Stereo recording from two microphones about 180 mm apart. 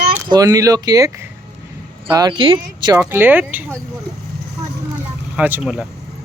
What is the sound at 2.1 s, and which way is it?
Speech, 25° right (ahead or behind).